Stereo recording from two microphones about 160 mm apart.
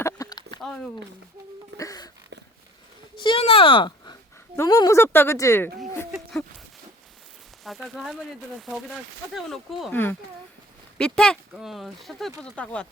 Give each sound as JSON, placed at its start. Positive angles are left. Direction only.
{"t": 0.0, "sound": "a sound", "side_deg": 25}
{"t": 0.6, "sound": "speech", "side_deg": 5}
{"t": 1.8, "sound": "wail", "side_deg": 20}
{"t": 3.2, "sound": "a sound", "side_deg": 35}
{"t": 4.5, "sound": "speech", "side_deg": 20}
{"t": 7.6, "sound": "speech", "side_deg": 0}
{"t": 9.9, "sound": "speech", "side_deg": 10}